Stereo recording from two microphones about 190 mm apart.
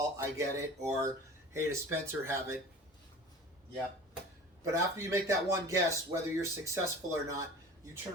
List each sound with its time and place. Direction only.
0.2 s speech: 15° right (ahead or behind)
4.6 s speech: 15° right (ahead or behind)